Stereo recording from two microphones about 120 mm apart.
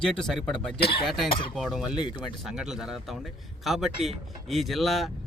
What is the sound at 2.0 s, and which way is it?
Speech, 40° left (ahead or behind).